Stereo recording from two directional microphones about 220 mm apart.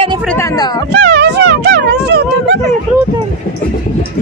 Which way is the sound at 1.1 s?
50° right (ahead or behind).